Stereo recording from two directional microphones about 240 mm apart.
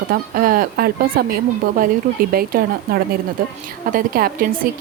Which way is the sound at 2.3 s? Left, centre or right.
Right.